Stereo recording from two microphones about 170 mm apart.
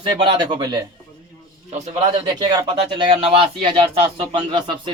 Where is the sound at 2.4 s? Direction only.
25° right (ahead or behind).